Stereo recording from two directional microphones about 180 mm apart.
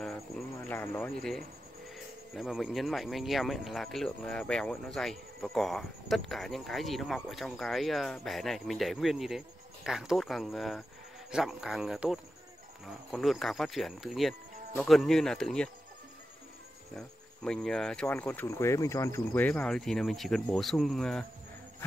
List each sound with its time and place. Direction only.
0.0 s a sound: 5° left (ahead or behind)
2.3 s speech: centre (ahead or behind)
16.9 s speech: 5° left (ahead or behind)